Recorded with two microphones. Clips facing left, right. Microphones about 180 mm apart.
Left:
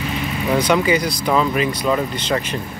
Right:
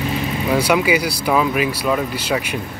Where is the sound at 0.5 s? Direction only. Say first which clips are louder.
Even; 10° right (ahead or behind).